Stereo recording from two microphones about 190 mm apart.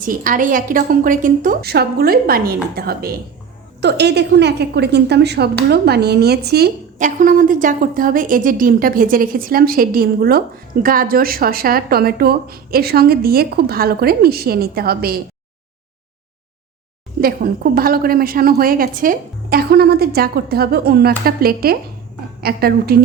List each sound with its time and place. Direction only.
0.0 s speech: 45° right (ahead or behind)
17.2 s speech: 50° right (ahead or behind)